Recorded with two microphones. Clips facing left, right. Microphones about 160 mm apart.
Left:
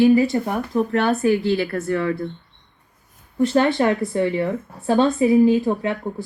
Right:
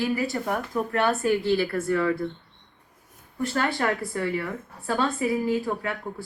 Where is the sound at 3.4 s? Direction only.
20° left (ahead or behind).